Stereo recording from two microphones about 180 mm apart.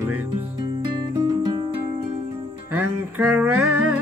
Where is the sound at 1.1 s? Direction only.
20° right (ahead or behind).